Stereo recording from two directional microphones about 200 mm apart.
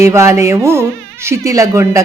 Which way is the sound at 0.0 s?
15° right (ahead or behind).